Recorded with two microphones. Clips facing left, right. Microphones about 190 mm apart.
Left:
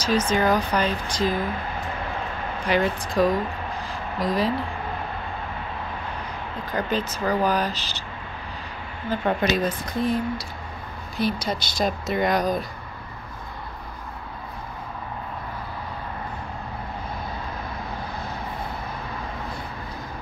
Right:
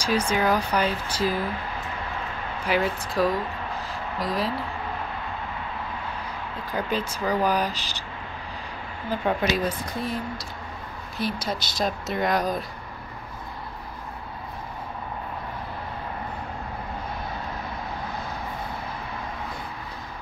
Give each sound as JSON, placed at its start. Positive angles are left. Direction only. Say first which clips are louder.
{"t": 0.0, "sound": "speech", "louder": "left 2 dB", "side_deg": -10}
{"t": 2.6, "sound": "speech", "louder": "left 2 dB", "side_deg": -5}
{"t": 3.8, "sound": "a sound", "louder": "left 4 dB", "side_deg": 0}
{"t": 6.7, "sound": "speech", "louder": "left 2 dB", "side_deg": -10}
{"t": 9.1, "sound": "speech", "louder": "left 2 dB", "side_deg": -5}